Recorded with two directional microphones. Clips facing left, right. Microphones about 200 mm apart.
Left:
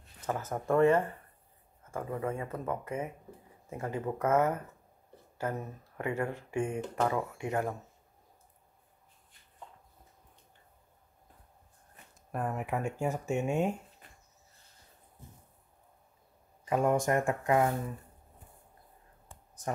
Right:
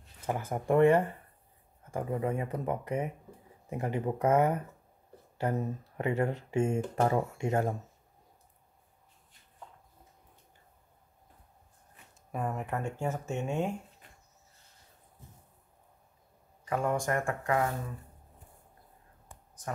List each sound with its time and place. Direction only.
0.2 s speech: 10° right (ahead or behind)
12.3 s speech: centre (ahead or behind)
16.6 s speech: 20° left (ahead or behind)